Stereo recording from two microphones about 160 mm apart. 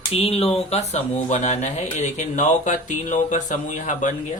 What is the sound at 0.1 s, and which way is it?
Speech, 40° left (ahead or behind).